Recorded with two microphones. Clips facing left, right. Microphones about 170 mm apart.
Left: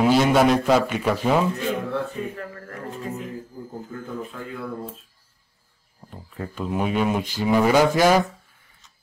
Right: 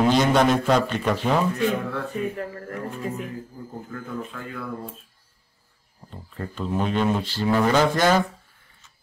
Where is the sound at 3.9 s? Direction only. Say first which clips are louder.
Right 1 dB; 20° left (ahead or behind).